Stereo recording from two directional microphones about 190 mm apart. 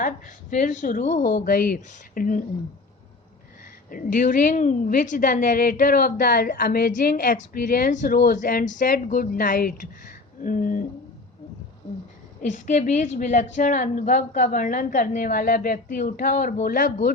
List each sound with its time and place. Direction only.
0.0 s a woman's voice: 40° left (ahead or behind)
3.8 s a woman's voice: 45° left (ahead or behind)
12.4 s a woman's voice: 40° left (ahead or behind)